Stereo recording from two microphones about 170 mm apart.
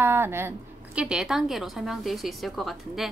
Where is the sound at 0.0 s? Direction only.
15° right (ahead or behind).